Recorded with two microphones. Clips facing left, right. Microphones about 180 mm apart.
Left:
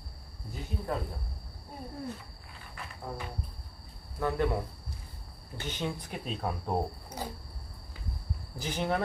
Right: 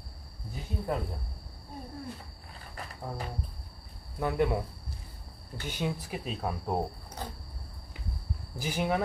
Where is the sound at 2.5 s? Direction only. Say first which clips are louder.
Right 2 dB; 40° right (ahead or behind).